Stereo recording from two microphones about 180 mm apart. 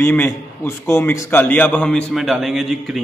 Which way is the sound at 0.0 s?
10° left (ahead or behind).